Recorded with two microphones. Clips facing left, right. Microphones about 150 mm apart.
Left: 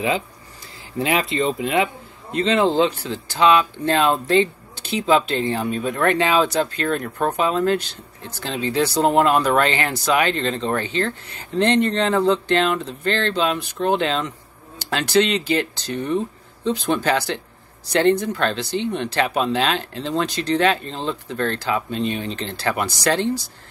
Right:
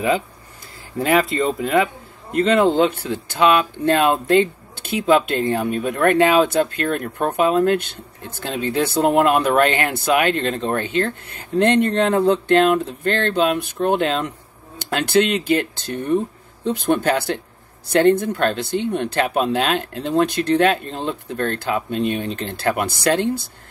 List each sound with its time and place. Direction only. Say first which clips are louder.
0.9 s speech: right 3 dB; 45° right (ahead or behind)